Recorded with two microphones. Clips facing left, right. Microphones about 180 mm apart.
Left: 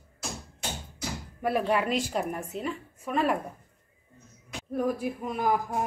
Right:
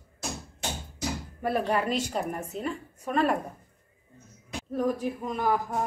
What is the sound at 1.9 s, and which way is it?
A woman's voice, 5° left (ahead or behind).